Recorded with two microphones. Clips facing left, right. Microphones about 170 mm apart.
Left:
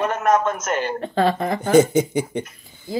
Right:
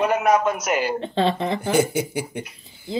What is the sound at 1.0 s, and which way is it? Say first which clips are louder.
Speech: left 2 dB; 25° right (ahead or behind).